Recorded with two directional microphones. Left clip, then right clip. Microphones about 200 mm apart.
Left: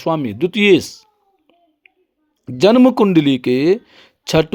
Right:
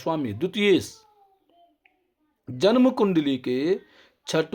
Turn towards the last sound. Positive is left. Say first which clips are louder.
# left 9 dB
turn(degrees=35)  # may be behind; listen again after turning